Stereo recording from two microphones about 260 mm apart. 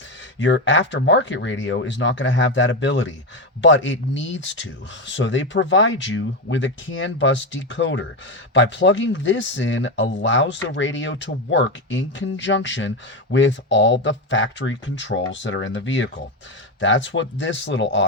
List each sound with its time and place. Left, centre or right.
0.3 s speech: left